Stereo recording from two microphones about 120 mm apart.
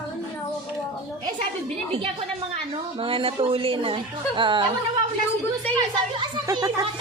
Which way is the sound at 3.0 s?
50° right (ahead or behind).